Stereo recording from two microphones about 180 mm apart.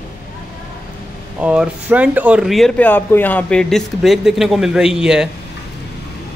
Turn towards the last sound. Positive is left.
turn(degrees=-5)  # may be behind; listen again after turning